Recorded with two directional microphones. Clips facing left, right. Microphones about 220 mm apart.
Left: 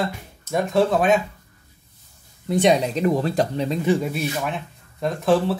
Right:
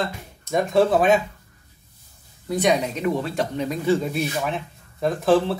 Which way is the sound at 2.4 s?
30° left (ahead or behind).